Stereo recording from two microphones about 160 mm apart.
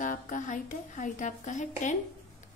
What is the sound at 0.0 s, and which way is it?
A woman's voice, 55° left (ahead or behind).